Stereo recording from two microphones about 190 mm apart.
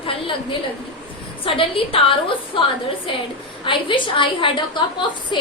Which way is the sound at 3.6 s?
25° left (ahead or behind).